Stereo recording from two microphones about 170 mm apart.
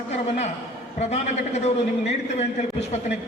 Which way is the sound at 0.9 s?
40° left (ahead or behind).